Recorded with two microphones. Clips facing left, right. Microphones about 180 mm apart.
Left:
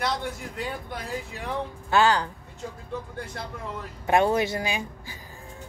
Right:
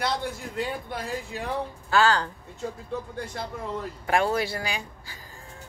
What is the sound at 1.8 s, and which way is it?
Speech, 20° left (ahead or behind).